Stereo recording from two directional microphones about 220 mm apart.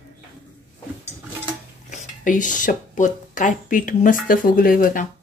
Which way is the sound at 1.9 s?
35° left (ahead or behind).